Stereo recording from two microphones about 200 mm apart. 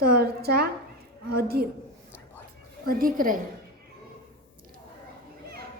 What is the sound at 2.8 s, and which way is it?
Speech, 45° right (ahead or behind).